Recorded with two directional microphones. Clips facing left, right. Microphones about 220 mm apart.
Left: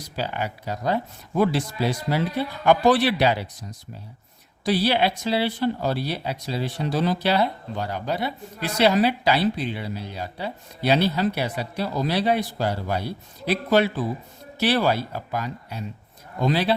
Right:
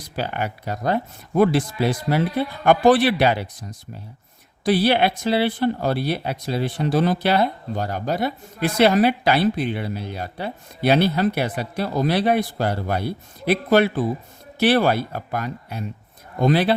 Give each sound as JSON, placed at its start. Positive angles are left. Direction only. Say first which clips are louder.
{"t": 0.2, "sound": "speech", "louder": "right 2 dB", "side_deg": -55}